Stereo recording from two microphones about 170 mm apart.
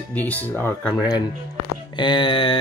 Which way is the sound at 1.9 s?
30° left (ahead or behind).